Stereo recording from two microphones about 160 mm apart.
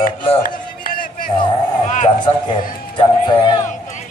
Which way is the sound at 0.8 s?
60° left (ahead or behind).